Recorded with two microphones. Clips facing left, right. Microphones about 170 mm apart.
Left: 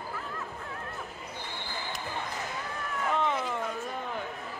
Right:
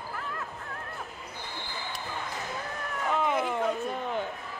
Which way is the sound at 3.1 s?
10° right (ahead or behind).